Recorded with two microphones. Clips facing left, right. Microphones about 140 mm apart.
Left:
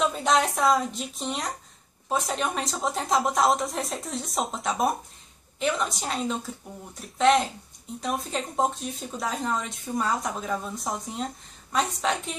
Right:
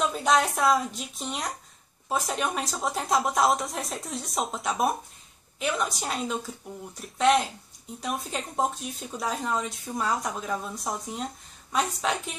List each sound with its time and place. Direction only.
0.1 s speech: centre (ahead or behind)